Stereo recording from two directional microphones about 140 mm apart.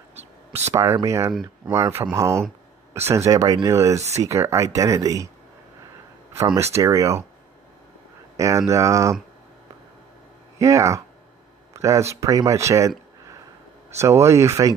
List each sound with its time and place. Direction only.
0.1 s a sound: 50° right (ahead or behind)
0.7 s speech: 20° right (ahead or behind)
6.4 s speech: 20° right (ahead or behind)
8.4 s speech: 25° right (ahead or behind)
10.6 s speech: 20° right (ahead or behind)
13.9 s speech: 20° right (ahead or behind)